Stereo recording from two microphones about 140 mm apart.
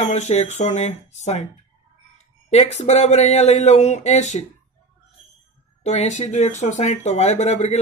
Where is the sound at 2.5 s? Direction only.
50° left (ahead or behind).